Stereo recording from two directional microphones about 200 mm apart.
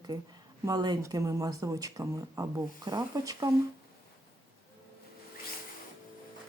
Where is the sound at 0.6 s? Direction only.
20° right (ahead or behind).